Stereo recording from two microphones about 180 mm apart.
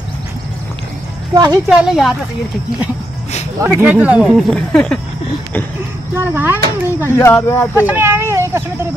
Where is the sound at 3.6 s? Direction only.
10° right (ahead or behind).